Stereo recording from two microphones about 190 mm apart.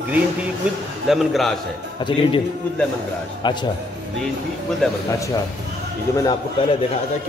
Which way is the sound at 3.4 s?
25° left (ahead or behind).